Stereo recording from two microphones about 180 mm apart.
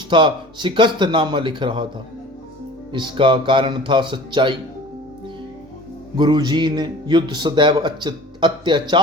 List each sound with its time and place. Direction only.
0.1 s speech: 25° right (ahead or behind)
2.9 s speech: 25° right (ahead or behind)
6.1 s speech: 25° right (ahead or behind)